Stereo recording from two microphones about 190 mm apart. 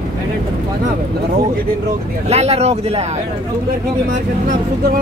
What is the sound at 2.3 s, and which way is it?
Speech, 35° right (ahead or behind).